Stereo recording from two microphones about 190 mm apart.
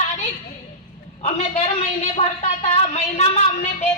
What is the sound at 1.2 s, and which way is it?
A woman's voice, 30° left (ahead or behind).